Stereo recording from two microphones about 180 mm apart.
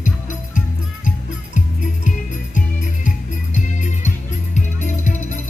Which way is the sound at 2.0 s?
45° left (ahead or behind).